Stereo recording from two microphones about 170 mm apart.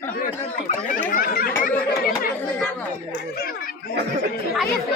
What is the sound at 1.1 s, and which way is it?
Speech, 55° left (ahead or behind).